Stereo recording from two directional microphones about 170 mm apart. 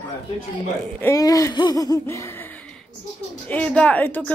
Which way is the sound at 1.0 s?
20° left (ahead or behind).